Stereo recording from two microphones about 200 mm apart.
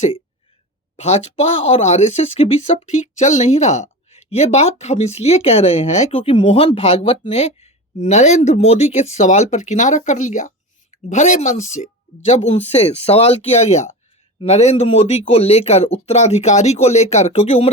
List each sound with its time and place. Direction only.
0.9 s speech: 35° left (ahead or behind)